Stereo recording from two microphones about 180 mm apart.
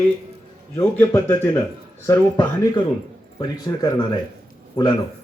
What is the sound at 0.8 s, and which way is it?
Speech, 15° left (ahead or behind).